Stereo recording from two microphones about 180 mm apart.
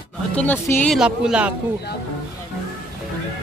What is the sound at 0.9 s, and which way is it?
Speech, 5° right (ahead or behind).